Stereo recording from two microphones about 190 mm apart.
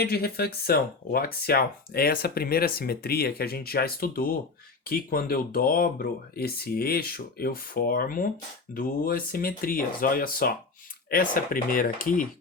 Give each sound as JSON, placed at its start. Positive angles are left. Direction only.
{"t": 0.0, "sound": "speech", "side_deg": 55}